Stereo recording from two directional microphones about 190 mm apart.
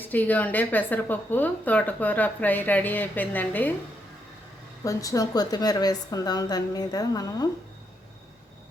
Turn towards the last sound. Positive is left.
turn(degrees=20)  # may be behind; listen again after turning